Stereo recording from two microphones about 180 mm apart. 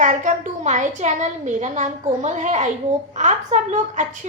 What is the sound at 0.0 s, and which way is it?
A woman's voice, 45° right (ahead or behind).